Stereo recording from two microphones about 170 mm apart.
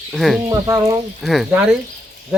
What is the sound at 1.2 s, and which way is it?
Speech, centre (ahead or behind).